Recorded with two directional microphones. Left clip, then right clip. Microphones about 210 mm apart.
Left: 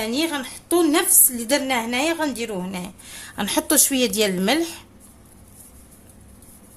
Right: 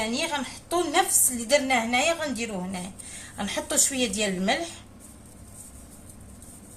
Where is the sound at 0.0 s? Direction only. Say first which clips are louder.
Left 4 dB; 55° left (ahead or behind).